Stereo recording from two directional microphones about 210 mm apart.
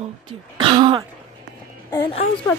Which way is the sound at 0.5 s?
25° right (ahead or behind).